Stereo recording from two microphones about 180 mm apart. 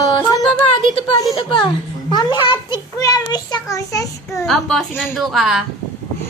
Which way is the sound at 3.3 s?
20° left (ahead or behind).